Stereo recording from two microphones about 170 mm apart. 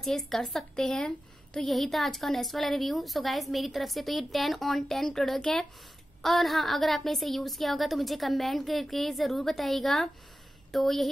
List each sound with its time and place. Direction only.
0.0 s a woman's voice: centre (ahead or behind)